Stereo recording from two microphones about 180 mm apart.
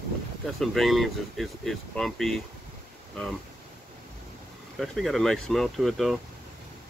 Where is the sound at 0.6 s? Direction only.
Centre (ahead or behind).